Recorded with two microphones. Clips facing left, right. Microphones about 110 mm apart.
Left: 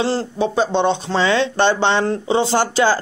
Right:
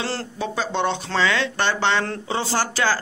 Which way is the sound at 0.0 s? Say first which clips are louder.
Left 8 dB; 20° left (ahead or behind).